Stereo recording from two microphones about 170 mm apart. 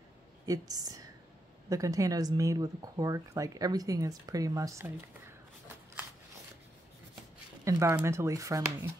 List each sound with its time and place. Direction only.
0.5 s speech: 20° right (ahead or behind)
7.6 s speech: 15° right (ahead or behind)